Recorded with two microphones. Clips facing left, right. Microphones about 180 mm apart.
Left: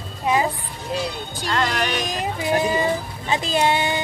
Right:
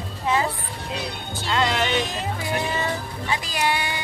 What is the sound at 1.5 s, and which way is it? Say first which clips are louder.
Music: right 1 dB; 20° right (ahead or behind).